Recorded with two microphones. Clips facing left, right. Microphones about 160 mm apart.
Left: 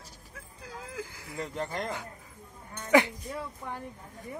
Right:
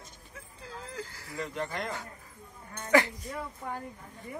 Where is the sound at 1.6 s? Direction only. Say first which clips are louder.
Left 1 dB; 35° left (ahead or behind).